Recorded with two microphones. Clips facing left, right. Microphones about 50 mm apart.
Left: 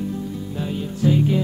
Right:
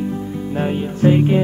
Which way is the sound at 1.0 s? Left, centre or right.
Right.